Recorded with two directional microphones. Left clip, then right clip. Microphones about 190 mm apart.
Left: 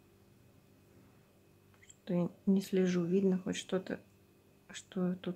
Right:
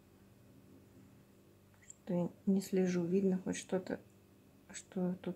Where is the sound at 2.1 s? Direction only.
10° left (ahead or behind).